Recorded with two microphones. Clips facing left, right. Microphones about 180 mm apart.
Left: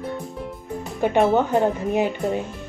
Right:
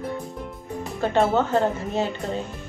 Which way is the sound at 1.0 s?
15° left (ahead or behind).